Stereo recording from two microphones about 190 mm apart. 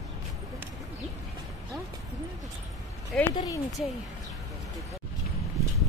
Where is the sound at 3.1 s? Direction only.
5° left (ahead or behind).